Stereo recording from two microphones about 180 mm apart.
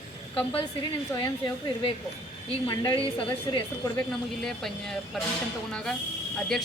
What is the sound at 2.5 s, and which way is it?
Speech, 30° left (ahead or behind).